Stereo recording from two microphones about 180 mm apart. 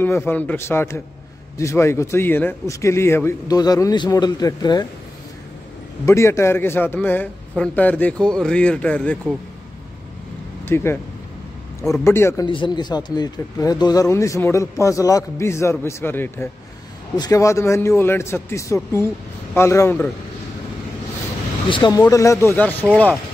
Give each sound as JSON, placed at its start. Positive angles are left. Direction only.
{"t": 0.0, "sound": "speech", "side_deg": 10}
{"t": 6.0, "sound": "speech", "side_deg": 15}
{"t": 10.6, "sound": "speech", "side_deg": 15}
{"t": 12.0, "sound": "speech", "side_deg": 15}
{"t": 12.4, "sound": "speech", "side_deg": 25}
{"t": 21.6, "sound": "speech", "side_deg": 25}